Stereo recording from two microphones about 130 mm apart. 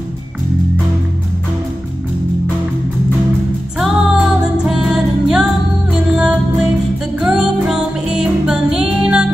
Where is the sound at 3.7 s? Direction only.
5° right (ahead or behind).